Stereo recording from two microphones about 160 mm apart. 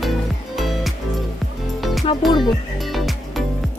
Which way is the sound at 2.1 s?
30° left (ahead or behind).